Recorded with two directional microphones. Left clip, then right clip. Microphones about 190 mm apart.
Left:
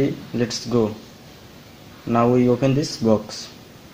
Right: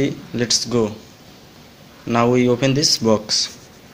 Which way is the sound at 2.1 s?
15° right (ahead or behind).